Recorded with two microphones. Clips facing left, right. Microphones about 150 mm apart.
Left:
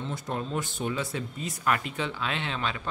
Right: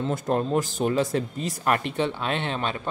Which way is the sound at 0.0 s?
50° right (ahead or behind).